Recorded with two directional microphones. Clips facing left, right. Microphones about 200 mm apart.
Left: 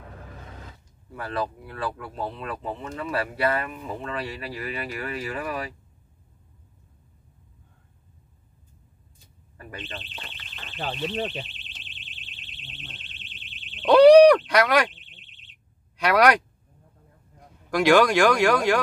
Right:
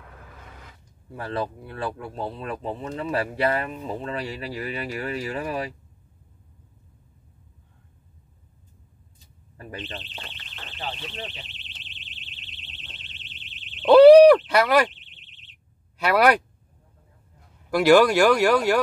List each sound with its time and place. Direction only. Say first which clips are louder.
0.0 s a sound: left 4 dB; 40° left (ahead or behind)
1.1 s speech: right 1 dB; 25° right (ahead or behind)
9.6 s speech: right 3 dB; 30° right (ahead or behind)
10.8 s alarm: left 7 dB; 50° left (ahead or behind)
13.8 s owl: right 2 dB; 5° right (ahead or behind)
16.0 s speech: even; 5° right (ahead or behind)
17.6 s speech: right 2 dB; 5° right (ahead or behind)